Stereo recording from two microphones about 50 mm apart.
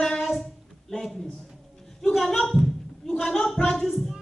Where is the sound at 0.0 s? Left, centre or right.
Centre.